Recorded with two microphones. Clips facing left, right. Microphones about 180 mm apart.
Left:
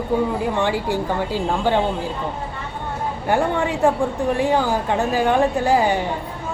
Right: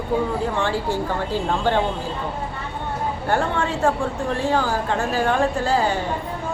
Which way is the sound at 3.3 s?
15° left (ahead or behind).